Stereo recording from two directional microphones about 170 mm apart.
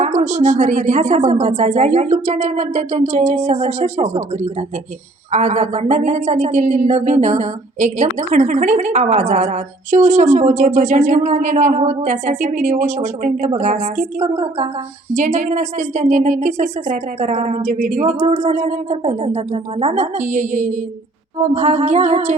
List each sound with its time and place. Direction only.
0.2 s a woman's voice: 45° right (ahead or behind)
5.3 s a woman's voice: 45° right (ahead or behind)